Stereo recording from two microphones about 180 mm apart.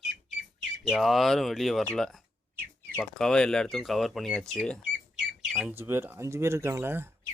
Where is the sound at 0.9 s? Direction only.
Centre (ahead or behind).